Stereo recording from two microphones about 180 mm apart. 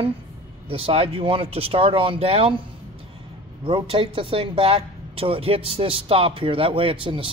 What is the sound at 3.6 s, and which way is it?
Speech, 30° right (ahead or behind).